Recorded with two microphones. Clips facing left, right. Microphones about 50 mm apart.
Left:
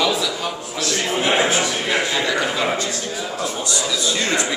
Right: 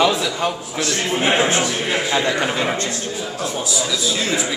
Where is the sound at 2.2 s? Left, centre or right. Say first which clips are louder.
Right 1 dB; right.